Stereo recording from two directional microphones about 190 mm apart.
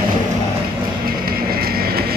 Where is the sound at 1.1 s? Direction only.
50° right (ahead or behind).